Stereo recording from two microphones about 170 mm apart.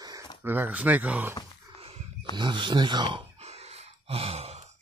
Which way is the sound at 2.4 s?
25° right (ahead or behind).